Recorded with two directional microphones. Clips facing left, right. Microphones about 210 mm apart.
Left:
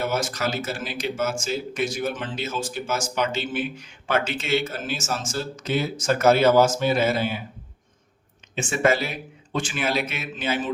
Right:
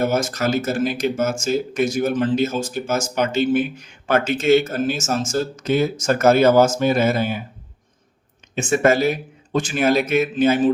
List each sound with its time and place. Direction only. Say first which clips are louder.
0.0 s speech: right 5 dB; 45° right (ahead or behind)
8.5 s speech: right 5 dB; 45° right (ahead or behind)